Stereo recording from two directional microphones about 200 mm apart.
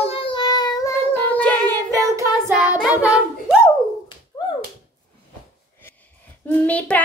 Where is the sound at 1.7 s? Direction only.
15° right (ahead or behind).